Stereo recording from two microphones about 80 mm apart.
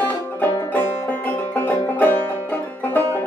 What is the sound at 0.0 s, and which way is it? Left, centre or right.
Music, left.